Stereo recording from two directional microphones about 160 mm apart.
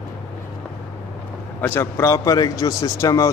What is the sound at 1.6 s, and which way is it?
A man's voice, 15° left (ahead or behind).